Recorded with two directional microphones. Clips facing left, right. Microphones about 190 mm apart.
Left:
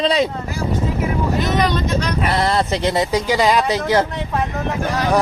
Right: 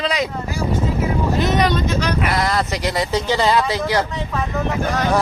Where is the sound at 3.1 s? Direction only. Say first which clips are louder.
Left 1 dB; 10° left (ahead or behind).